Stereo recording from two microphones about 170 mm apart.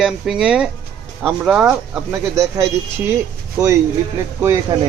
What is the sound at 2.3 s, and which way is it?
A man's voice, 20° right (ahead or behind).